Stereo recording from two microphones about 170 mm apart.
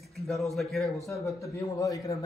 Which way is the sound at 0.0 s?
Centre (ahead or behind).